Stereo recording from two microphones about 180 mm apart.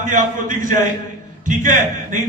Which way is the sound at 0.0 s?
45° right (ahead or behind).